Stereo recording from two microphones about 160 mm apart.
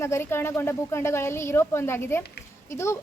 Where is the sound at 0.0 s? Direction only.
15° left (ahead or behind).